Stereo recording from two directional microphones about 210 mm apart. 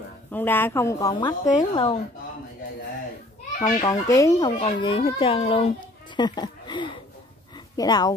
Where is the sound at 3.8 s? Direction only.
15° left (ahead or behind).